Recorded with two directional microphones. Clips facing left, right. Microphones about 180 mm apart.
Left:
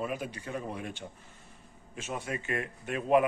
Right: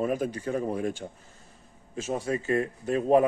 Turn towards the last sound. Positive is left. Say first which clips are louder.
# right 4 dB
turn(degrees=-35)  # may be behind; listen again after turning